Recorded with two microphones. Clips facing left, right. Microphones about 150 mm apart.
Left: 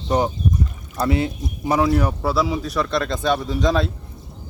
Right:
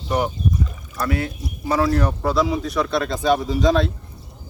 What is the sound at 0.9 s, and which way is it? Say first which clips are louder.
Speech: left 3 dB; 25° left (ahead or behind).